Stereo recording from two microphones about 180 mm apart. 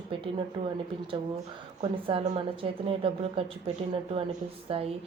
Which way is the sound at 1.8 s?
25° right (ahead or behind).